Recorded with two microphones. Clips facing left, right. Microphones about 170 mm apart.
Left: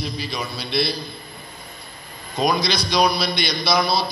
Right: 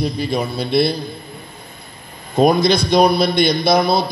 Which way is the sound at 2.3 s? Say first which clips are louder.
Right 8 dB; 55° right (ahead or behind).